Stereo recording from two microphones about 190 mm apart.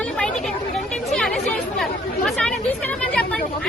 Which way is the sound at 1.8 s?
5° left (ahead or behind).